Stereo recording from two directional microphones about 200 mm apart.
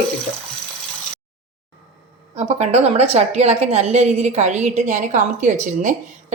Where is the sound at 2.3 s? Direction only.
35° right (ahead or behind).